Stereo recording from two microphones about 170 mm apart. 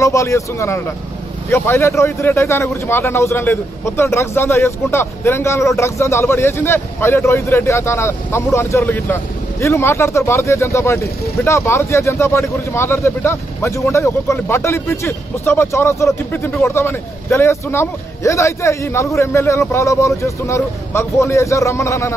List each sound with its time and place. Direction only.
0.0 s a man's voice: 20° left (ahead or behind)